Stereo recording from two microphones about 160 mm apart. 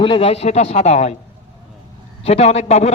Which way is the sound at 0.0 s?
35° left (ahead or behind).